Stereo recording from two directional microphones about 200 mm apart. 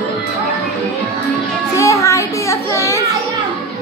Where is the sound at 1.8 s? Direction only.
15° left (ahead or behind).